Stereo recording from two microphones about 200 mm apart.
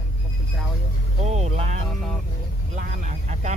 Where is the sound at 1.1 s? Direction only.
35° right (ahead or behind).